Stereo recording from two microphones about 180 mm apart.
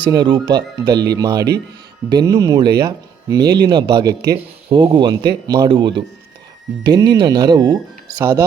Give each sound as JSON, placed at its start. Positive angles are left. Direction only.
{"t": 0.0, "sound": "speech", "side_deg": -25}